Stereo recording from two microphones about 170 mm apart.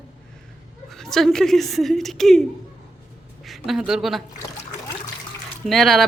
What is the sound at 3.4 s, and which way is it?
Speech, centre (ahead or behind).